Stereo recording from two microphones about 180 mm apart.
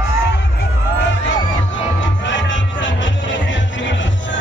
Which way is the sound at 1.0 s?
90° left.